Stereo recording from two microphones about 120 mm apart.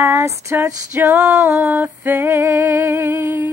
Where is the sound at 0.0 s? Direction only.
25° right (ahead or behind).